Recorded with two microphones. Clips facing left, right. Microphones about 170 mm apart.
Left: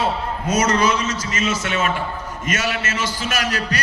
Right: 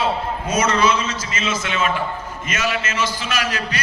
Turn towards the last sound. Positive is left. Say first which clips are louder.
# left 1 dB
turn(degrees=45)  # may be behind; listen again after turning